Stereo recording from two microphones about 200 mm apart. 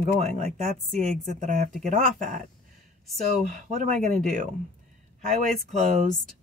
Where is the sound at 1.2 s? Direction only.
40° right (ahead or behind).